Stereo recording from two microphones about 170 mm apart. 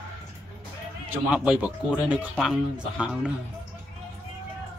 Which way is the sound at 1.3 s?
5° right (ahead or behind).